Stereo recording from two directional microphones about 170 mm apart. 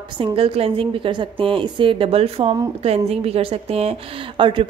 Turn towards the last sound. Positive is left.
turn(degrees=-30)  # may be behind; listen again after turning